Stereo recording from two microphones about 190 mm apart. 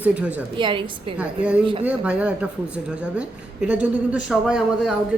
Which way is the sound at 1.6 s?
25° right (ahead or behind).